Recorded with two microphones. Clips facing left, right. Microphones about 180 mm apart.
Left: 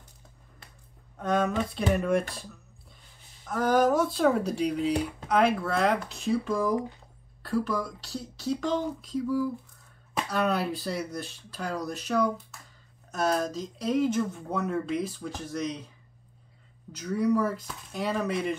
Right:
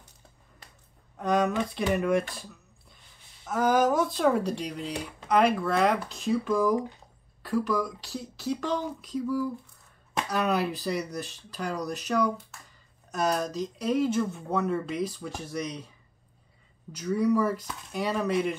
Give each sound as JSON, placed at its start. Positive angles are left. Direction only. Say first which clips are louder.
{"t": 1.1, "sound": "speech", "louder": "right 1 dB", "side_deg": 0}
{"t": 3.4, "sound": "speech", "louder": "even", "side_deg": -5}
{"t": 17.1, "sound": "speech", "louder": "right 1 dB", "side_deg": -5}